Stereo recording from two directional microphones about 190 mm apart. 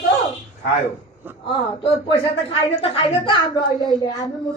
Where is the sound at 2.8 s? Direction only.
30° left (ahead or behind).